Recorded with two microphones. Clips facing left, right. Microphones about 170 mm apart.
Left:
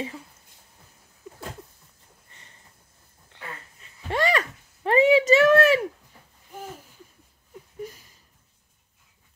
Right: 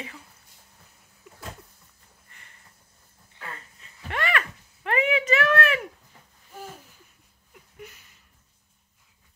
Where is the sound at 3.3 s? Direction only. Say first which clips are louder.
Even; 80° left.